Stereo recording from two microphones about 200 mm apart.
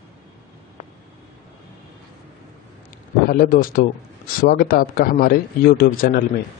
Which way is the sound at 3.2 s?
45° left (ahead or behind).